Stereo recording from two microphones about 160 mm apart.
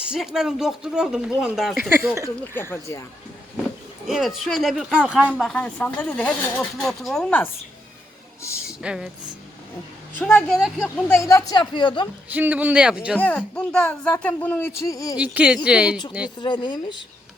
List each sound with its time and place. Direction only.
0.1 s speech: 5° right (ahead or behind)
2.6 s speech: 15° left (ahead or behind)
4.0 s speech: centre (ahead or behind)
5.2 s speech: 5° left (ahead or behind)
8.4 s speech: 15° left (ahead or behind)
8.6 s speech: 5° right (ahead or behind)
10.2 s speech: 10° left (ahead or behind)
10.8 s speech: 15° left (ahead or behind); by 12.0 s 30° left (ahead or behind)
12.3 s a man's voice: 10° right (ahead or behind)
13.1 s speech: 10° left (ahead or behind)
15.2 s a man's voice: 10° right (ahead or behind)
16.4 s speech: 30° left (ahead or behind)